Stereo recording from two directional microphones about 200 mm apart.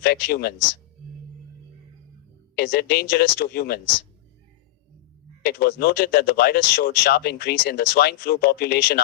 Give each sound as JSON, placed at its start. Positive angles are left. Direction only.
{"t": 0.0, "sound": "speech", "side_deg": 50}
{"t": 2.6, "sound": "speech", "side_deg": 55}
{"t": 5.4, "sound": "speech", "side_deg": 50}